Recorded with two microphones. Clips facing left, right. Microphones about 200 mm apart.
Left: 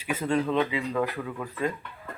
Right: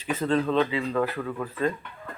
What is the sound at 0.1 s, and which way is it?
Speech, 10° left (ahead or behind).